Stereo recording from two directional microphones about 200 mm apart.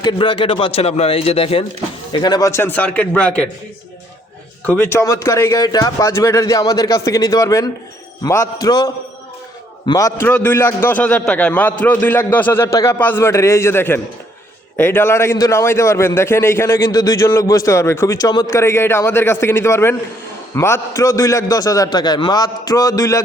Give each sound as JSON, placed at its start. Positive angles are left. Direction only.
{"t": 0.0, "sound": "a man's voice", "side_deg": 25}
{"t": 4.6, "sound": "a man's voice", "side_deg": 10}